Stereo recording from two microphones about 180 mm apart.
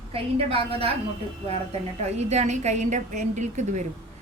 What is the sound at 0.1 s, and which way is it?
Speech, 35° right (ahead or behind).